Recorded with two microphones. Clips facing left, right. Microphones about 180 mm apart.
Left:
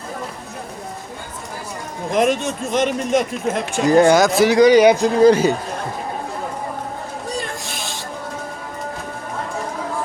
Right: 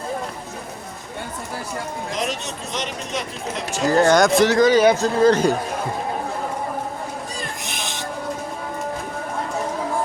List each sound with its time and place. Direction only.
2.1 s speech: 55° left (ahead or behind)
3.9 s speech: 15° left (ahead or behind)
4.2 s speech: centre (ahead or behind)
4.5 s speech: 15° left (ahead or behind)
7.6 s music: 20° right (ahead or behind)